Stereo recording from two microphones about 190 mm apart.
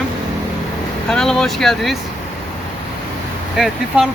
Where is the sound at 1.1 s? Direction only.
5° left (ahead or behind).